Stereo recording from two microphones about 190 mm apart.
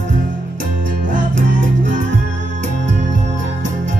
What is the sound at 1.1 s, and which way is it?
Music, 45° right (ahead or behind).